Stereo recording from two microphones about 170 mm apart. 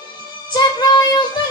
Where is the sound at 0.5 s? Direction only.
25° left (ahead or behind).